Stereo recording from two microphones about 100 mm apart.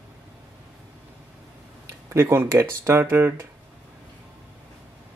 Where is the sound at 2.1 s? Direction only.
25° right (ahead or behind).